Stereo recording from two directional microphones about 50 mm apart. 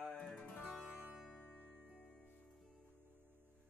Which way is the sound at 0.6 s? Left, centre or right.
Centre.